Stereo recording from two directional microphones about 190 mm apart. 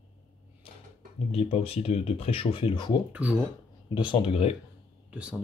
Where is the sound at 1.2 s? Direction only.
30° left (ahead or behind).